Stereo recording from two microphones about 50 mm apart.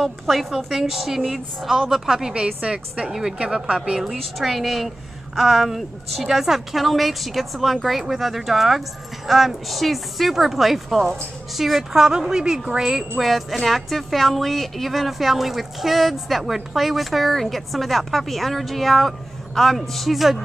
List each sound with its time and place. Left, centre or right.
0.0 s a woman's voice: centre
2.3 s a woman's voice: right
3.1 s a woman's voice: centre
3.6 s a woman's voice: centre
4.1 s a woman's voice: centre
13.2 s a woman's voice: centre